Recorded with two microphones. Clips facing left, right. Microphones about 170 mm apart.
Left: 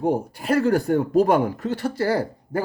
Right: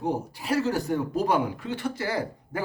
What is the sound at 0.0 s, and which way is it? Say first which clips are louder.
A man's voice: left 6 dB; 55° left (ahead or behind).